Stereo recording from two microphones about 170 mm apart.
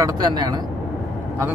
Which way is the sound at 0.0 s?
25° right (ahead or behind).